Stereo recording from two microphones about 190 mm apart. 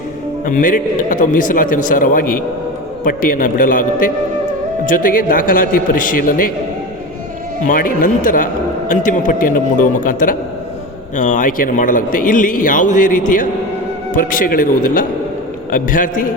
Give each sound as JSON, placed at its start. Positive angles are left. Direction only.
{"t": 0.4, "sound": "a man's voice", "side_deg": 45}
{"t": 7.6, "sound": "a man's voice", "side_deg": 45}